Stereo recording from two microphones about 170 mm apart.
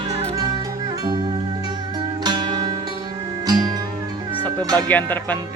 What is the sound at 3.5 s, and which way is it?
Music, 25° right (ahead or behind).